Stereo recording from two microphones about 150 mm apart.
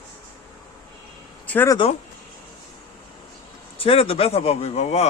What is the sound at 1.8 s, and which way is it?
Speech, 40° left (ahead or behind).